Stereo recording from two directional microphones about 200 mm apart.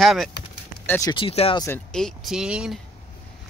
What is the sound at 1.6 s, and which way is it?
Speech, 10° left (ahead or behind).